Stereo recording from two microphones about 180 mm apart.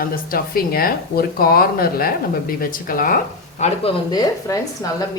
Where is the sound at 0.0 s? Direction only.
55° left (ahead or behind).